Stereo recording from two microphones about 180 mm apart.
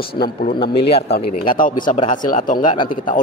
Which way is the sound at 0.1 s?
60° left (ahead or behind).